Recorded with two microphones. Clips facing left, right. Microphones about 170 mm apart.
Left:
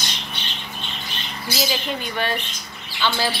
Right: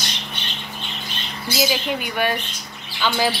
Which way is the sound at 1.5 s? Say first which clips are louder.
Right 3 dB; 10° right (ahead or behind).